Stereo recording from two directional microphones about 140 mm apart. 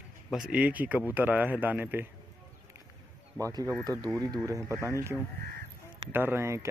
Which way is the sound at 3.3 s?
25° right (ahead or behind).